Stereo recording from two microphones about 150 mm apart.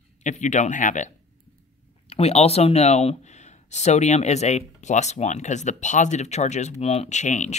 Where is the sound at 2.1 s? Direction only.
45° left (ahead or behind).